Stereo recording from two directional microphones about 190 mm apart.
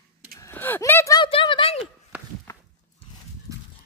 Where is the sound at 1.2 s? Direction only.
25° left (ahead or behind).